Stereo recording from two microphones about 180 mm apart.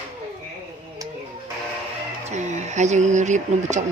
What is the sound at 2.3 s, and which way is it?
Speech, 40° right (ahead or behind).